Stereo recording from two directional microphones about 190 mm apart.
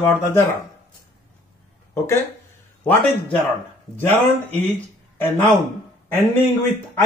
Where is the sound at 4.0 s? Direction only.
10° left (ahead or behind).